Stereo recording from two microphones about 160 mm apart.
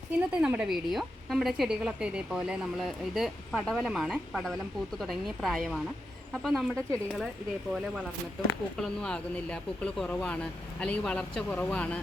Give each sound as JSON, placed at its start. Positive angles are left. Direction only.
{"t": 0.2, "sound": "speech", "side_deg": -5}
{"t": 8.8, "sound": "speech", "side_deg": 5}